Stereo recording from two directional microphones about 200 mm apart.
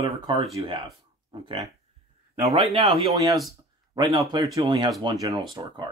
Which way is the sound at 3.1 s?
15° right (ahead or behind).